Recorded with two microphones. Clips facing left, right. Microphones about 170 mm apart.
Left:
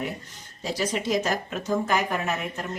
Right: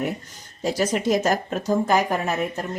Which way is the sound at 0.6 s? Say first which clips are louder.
Right 5 dB; 45° right (ahead or behind).